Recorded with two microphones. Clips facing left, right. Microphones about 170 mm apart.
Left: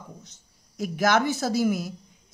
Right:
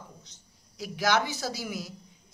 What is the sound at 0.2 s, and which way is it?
A woman's voice, 50° left (ahead or behind).